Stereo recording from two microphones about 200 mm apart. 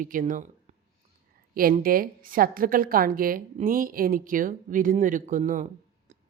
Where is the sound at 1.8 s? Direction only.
45° right (ahead or behind).